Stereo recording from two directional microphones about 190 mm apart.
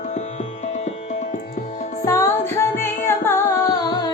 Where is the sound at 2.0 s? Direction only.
15° left (ahead or behind).